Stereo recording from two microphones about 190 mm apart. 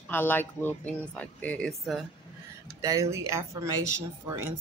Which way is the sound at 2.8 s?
15° right (ahead or behind).